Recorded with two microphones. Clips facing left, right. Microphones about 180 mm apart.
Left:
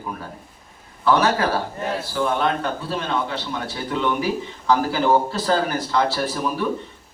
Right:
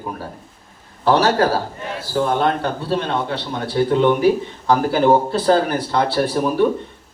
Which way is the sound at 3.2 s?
55° right (ahead or behind).